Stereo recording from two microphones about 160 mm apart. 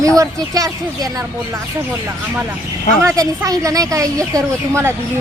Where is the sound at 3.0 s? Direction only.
25° right (ahead or behind).